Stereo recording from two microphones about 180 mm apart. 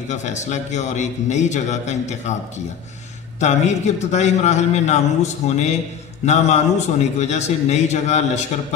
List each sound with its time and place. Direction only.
0.1 s a man's voice: 40° left (ahead or behind)
3.3 s a man's voice: 40° left (ahead or behind)